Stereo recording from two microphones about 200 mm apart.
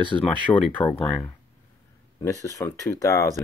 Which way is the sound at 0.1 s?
15° left (ahead or behind).